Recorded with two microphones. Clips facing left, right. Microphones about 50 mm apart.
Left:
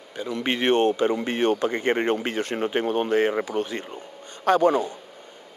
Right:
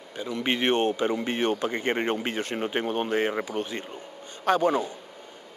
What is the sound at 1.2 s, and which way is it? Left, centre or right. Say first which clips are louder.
Speech: left 4 dB; left.